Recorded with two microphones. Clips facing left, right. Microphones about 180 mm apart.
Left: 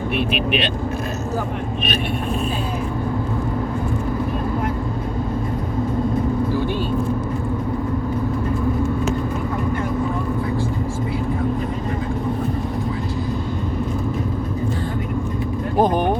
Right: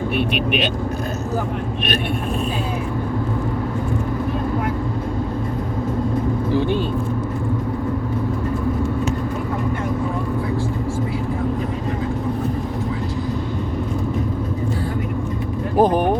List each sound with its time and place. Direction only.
0.2 s speech: centre (ahead or behind)
15.8 s speech: 5° right (ahead or behind)